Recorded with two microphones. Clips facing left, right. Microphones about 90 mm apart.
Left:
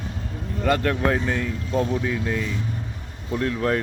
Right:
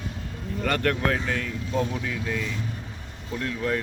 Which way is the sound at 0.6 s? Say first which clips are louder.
Left 3 dB; 20° left (ahead or behind).